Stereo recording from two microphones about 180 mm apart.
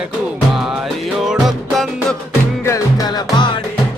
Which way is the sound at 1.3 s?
Centre (ahead or behind).